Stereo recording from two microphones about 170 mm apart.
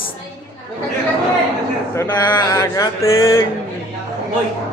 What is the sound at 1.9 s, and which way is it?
A man's voice, 15° left (ahead or behind).